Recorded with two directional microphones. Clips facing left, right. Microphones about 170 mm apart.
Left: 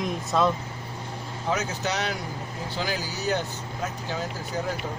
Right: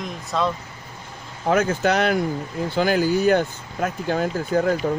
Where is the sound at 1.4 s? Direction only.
55° right (ahead or behind).